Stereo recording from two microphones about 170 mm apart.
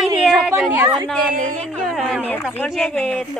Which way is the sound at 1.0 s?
Centre (ahead or behind).